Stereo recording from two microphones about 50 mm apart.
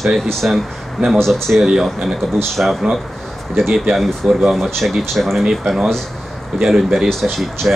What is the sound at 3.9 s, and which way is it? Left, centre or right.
Speech, centre.